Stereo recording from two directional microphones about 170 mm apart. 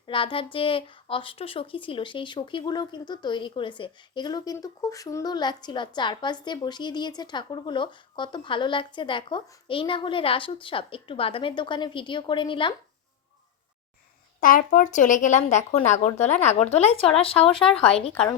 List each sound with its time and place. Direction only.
0.0 s a woman's voice: 30° left (ahead or behind)
14.4 s speech: 55° left (ahead or behind); by 17.5 s 35° left (ahead or behind)